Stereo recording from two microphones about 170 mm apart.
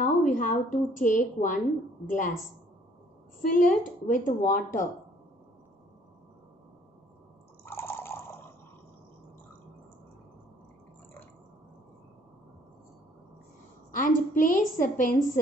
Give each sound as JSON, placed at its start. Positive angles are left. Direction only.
{"t": 0.0, "sound": "a woman's voice", "side_deg": 50}
{"t": 3.4, "sound": "a woman's voice", "side_deg": 50}
{"t": 7.6, "sound": "water", "side_deg": 15}
{"t": 13.9, "sound": "a woman's voice", "side_deg": 50}